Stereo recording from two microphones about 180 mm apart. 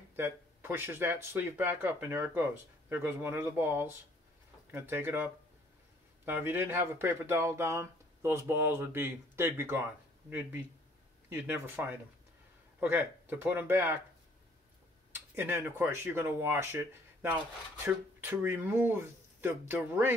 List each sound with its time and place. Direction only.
0.1 s speech: 15° right (ahead or behind)
11.2 s speech: 10° right (ahead or behind)
15.3 s speech: 10° right (ahead or behind)